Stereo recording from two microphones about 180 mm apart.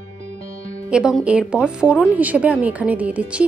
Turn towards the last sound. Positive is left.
turn(degrees=-5)  # may be behind; listen again after turning